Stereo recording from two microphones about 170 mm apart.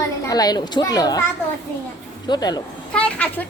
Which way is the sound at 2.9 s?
5° left (ahead or behind).